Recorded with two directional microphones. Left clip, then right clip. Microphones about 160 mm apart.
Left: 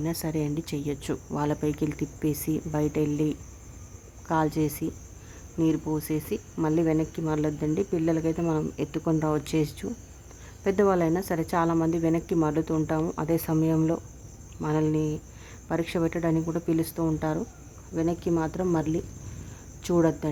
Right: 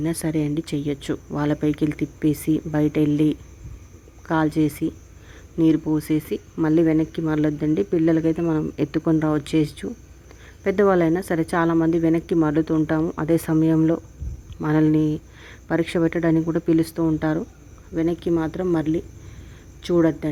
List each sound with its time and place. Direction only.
0.0 s speech: 20° right (ahead or behind)